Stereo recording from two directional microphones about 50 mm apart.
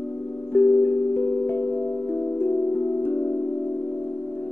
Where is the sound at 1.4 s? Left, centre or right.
Left.